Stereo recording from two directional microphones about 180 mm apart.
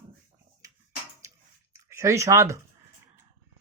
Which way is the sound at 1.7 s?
15° right (ahead or behind).